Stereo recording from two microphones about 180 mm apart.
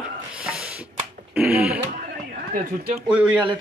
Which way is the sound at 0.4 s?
5° right (ahead or behind).